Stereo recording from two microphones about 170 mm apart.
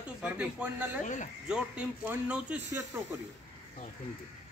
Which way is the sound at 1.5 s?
10° right (ahead or behind).